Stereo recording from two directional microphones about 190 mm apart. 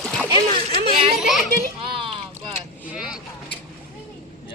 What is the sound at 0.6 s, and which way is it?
Speech, 30° right (ahead or behind).